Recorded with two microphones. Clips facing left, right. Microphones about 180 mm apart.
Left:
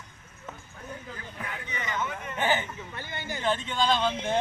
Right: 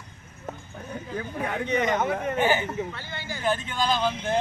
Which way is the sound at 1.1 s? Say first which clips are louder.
Right 10 dB; 70° right (ahead or behind).